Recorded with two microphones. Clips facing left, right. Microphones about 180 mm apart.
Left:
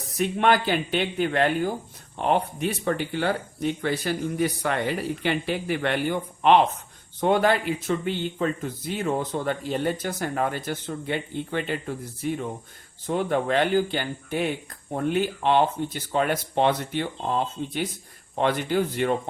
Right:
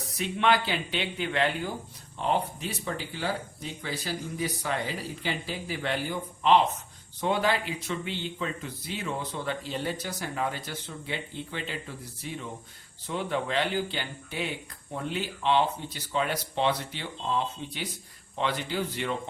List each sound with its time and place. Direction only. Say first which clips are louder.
0.2 s speech: left 4 dB; 50° left (ahead or behind)
2.1 s speech: left 4 dB; 60° left (ahead or behind)